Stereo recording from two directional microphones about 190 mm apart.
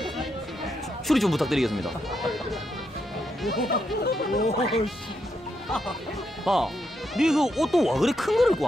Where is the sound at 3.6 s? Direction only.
55° left (ahead or behind).